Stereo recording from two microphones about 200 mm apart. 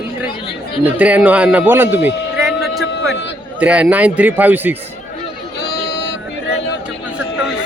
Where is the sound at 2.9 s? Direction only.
60° left (ahead or behind).